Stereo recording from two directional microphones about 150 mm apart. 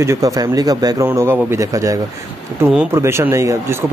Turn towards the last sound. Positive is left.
turn(degrees=-20)  # may be behind; listen again after turning